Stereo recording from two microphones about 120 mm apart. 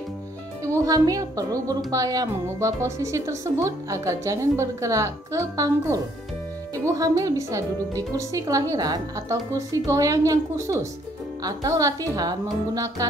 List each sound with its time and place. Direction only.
0.7 s speech: 30° right (ahead or behind)